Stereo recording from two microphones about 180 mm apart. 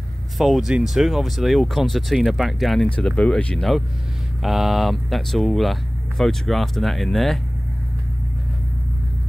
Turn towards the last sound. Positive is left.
turn(degrees=0)  # may be behind; listen again after turning